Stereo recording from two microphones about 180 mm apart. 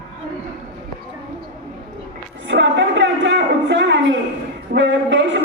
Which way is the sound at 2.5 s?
90° right.